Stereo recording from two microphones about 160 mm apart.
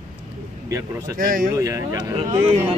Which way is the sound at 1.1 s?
60° right (ahead or behind).